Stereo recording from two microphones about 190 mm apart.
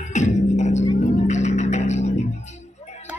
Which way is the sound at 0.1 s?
40° left (ahead or behind).